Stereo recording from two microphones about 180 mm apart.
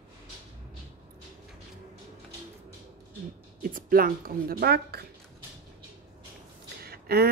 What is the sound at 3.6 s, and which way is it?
Speech, 50° right (ahead or behind).